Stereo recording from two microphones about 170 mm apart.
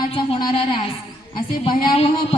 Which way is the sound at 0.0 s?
25° left (ahead or behind).